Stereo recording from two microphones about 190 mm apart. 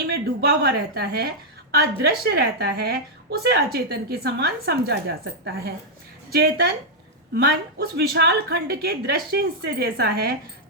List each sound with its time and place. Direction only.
0.3 s a woman's voice: 55° right (ahead or behind)
7.3 s a woman's voice: 55° right (ahead or behind)